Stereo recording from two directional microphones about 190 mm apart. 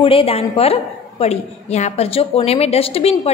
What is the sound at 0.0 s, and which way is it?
A woman's voice, 30° left (ahead or behind).